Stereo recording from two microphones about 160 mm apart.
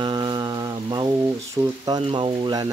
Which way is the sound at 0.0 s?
30° right (ahead or behind).